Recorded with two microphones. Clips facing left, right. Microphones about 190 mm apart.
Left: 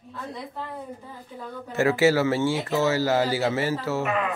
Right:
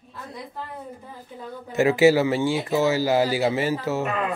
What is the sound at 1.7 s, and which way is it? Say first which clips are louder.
Speech: right 3 dB; 15° right (ahead or behind).